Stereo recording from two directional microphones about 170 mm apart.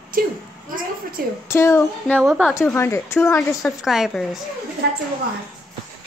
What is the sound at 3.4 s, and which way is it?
A woman's voice, centre (ahead or behind).